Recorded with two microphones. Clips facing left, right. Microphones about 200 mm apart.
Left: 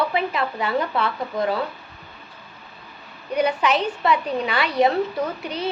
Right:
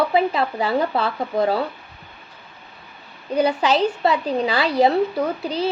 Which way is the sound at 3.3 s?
30° right (ahead or behind).